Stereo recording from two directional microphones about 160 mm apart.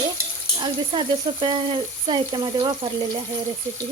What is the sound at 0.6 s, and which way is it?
Speech, 30° right (ahead or behind).